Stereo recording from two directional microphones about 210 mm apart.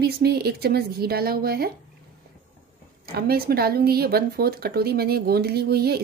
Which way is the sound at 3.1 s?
45° right (ahead or behind).